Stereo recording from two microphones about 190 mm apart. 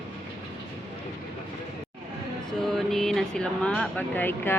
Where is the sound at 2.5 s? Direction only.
Centre (ahead or behind).